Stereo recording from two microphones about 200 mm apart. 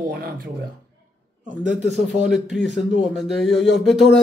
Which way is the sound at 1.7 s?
Centre (ahead or behind).